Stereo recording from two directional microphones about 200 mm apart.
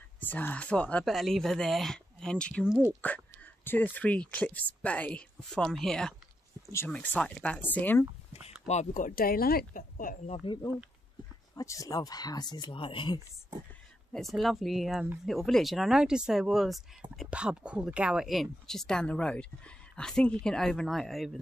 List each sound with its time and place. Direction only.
0.2 s speech: 10° left (ahead or behind)
3.6 s a woman's voice: 10° left (ahead or behind)
8.3 s speech: 30° left (ahead or behind)
14.3 s speech: centre (ahead or behind)